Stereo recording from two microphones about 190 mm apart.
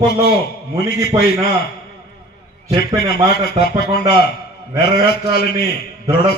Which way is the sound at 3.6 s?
55° left (ahead or behind).